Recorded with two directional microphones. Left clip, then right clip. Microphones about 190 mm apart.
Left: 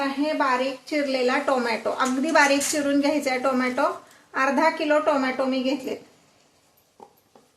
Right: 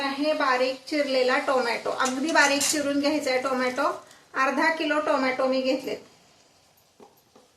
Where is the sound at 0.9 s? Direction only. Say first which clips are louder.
Left 1 dB; 40° left (ahead or behind).